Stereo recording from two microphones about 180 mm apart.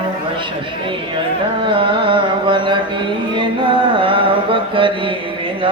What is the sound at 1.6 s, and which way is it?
Carnatic music, 30° right (ahead or behind).